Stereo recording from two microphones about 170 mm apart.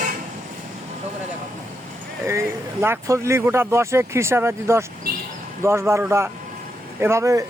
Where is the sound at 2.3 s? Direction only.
15° right (ahead or behind).